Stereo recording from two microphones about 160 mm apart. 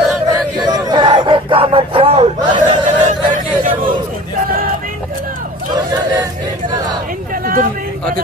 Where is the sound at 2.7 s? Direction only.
50° right (ahead or behind).